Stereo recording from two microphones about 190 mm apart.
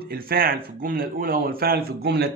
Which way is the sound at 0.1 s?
50° right (ahead or behind).